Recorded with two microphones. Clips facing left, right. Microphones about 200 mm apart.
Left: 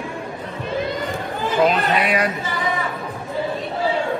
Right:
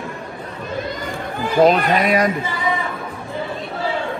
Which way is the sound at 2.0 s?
40° right (ahead or behind).